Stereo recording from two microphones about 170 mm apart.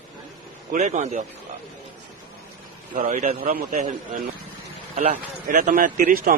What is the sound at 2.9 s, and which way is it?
A man's voice, 50° right (ahead or behind).